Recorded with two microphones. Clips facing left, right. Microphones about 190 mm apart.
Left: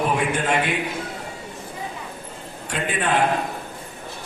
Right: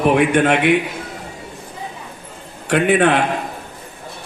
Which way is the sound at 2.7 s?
70° right (ahead or behind).